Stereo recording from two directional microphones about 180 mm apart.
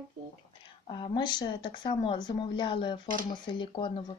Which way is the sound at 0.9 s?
25° left (ahead or behind).